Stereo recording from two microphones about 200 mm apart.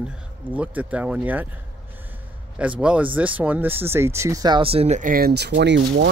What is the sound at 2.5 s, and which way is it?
Speech, 5° right (ahead or behind).